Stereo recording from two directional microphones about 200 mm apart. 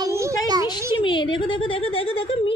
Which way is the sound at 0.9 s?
25° left (ahead or behind).